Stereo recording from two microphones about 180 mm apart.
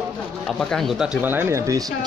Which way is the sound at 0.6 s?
Centre (ahead or behind).